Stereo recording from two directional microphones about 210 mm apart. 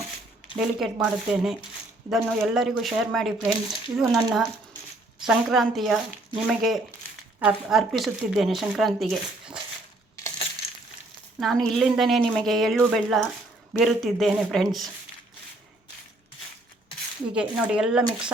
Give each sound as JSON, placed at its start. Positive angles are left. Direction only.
{"t": 0.5, "sound": "speech", "side_deg": 0}
{"t": 10.2, "sound": "crushing", "side_deg": 20}
{"t": 11.3, "sound": "speech", "side_deg": 0}
{"t": 17.3, "sound": "speech", "side_deg": -5}